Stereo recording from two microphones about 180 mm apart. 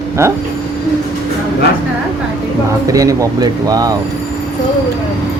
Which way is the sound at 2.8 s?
20° right (ahead or behind).